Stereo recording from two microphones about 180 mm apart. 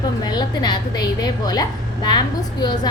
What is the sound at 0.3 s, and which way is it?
A woman's voice, 25° left (ahead or behind).